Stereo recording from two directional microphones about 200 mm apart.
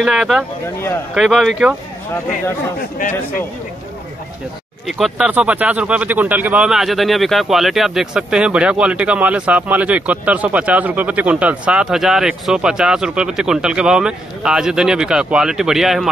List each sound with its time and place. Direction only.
0.0 s speech: centre (ahead or behind)
4.8 s speech: centre (ahead or behind)